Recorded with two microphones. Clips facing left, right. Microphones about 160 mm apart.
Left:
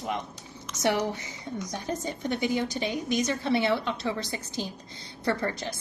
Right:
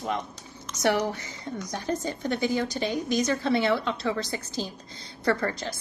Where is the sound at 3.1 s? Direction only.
20° left (ahead or behind).